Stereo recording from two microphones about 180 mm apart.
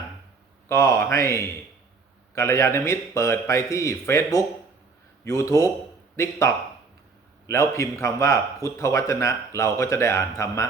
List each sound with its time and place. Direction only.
0.7 s a man's voice: 15° left (ahead or behind)